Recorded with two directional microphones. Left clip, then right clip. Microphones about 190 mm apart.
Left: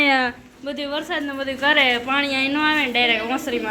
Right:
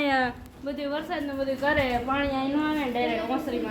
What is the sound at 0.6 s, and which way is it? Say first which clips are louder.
A woman's voice: left 4 dB; 25° left (ahead or behind).